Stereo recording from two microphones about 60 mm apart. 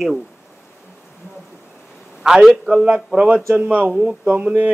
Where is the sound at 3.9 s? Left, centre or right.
Centre.